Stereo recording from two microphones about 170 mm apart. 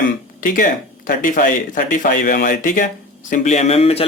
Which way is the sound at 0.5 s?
55° left (ahead or behind).